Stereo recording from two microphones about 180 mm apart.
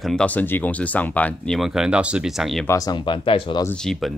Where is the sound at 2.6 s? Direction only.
20° left (ahead or behind).